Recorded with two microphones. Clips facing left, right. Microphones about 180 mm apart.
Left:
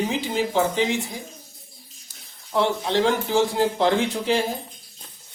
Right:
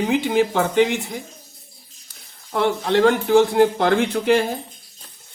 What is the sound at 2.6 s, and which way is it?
Speech, 55° right (ahead or behind).